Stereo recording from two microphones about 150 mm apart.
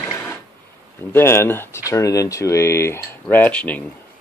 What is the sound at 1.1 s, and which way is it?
Speech, 15° left (ahead or behind).